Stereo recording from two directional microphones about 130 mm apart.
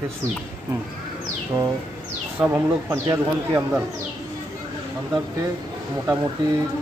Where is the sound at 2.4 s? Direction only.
15° right (ahead or behind).